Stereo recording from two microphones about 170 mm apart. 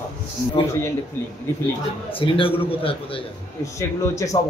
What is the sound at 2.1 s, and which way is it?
A man's voice, 30° left (ahead or behind).